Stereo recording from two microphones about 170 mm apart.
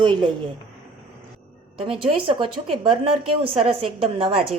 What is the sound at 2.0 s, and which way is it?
A woman's voice, 30° right (ahead or behind).